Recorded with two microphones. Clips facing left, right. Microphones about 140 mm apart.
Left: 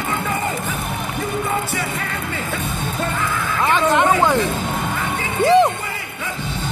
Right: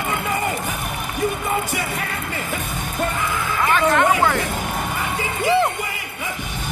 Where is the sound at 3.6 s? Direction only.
20° left (ahead or behind).